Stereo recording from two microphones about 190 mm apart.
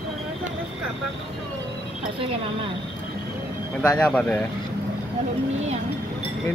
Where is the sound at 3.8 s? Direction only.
5° left (ahead or behind).